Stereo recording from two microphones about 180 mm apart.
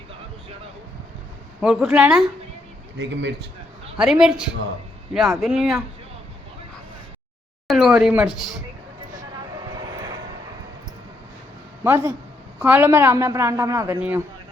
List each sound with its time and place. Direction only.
1.6 s speech: 5° right (ahead or behind)
3.0 s a man's voice: 80° right
3.9 s speech: 5° right (ahead or behind)
7.7 s speech: 5° right (ahead or behind)
9.3 s vehicle: 20° right (ahead or behind)
11.8 s a woman's voice: 15° right (ahead or behind)